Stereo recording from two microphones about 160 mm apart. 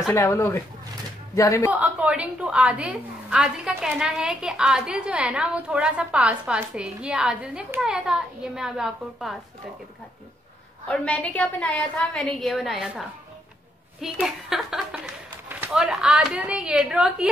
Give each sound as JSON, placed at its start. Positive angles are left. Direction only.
{"t": 0.1, "sound": "speech", "side_deg": 15}
{"t": 1.7, "sound": "a woman's voice", "side_deg": -10}
{"t": 10.9, "sound": "a woman's voice", "side_deg": 10}
{"t": 14.0, "sound": "a woman's voice", "side_deg": -5}